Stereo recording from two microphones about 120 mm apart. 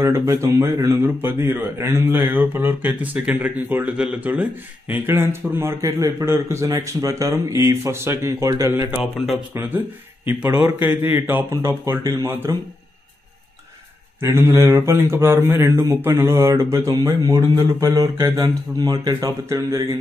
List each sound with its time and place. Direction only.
0.0 s speech: 25° right (ahead or behind)
9.0 s speech: centre (ahead or behind)
9.5 s speech: 20° right (ahead or behind)
14.2 s speech: 20° right (ahead or behind)